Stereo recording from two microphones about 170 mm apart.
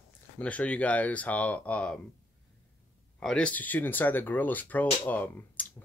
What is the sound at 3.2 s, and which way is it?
Speech, 5° left (ahead or behind).